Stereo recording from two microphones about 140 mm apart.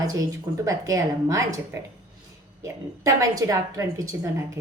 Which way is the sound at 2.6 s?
20° right (ahead or behind).